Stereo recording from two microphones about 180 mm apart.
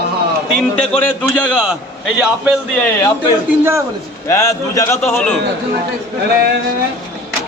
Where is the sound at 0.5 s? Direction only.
5° left (ahead or behind).